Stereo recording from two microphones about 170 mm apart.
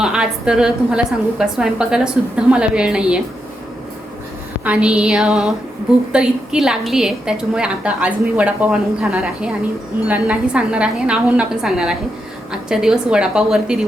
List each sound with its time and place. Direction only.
0.0 s a woman's voice: 5° right (ahead or behind)
4.6 s a woman's voice: 5° right (ahead or behind)